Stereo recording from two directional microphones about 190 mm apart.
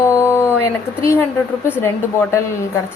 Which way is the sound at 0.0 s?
15° left (ahead or behind).